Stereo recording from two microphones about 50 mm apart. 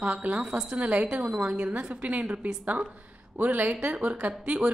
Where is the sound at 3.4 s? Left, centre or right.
Right; by 4.7 s centre.